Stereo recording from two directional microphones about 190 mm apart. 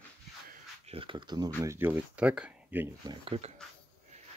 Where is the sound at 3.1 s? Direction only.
30° right (ahead or behind).